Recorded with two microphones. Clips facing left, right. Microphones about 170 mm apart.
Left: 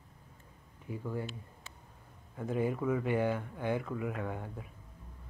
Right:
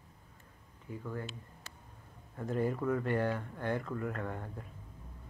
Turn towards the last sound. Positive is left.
turn(degrees=5)  # may be behind; listen again after turning